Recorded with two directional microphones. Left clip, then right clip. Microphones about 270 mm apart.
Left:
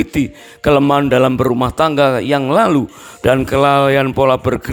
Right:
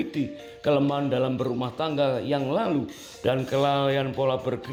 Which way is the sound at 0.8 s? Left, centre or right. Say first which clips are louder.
Left 13 dB; left.